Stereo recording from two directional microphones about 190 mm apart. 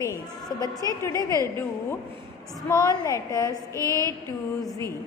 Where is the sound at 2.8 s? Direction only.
20° left (ahead or behind).